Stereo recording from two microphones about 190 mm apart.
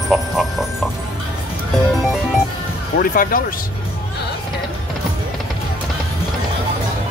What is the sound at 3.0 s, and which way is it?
Speech, 50° left (ahead or behind).